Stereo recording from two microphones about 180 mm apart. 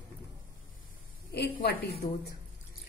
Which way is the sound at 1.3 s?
65° left (ahead or behind).